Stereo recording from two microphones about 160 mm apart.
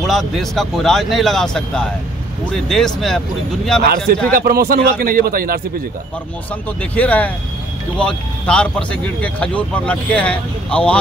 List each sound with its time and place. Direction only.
0.0 s a man's voice: centre (ahead or behind)
4.3 s a man's voice: 70° right (ahead or behind)
6.8 s speech: 10° left (ahead or behind)